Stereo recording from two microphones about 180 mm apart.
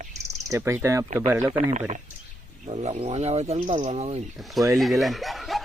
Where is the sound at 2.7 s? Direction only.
35° right (ahead or behind).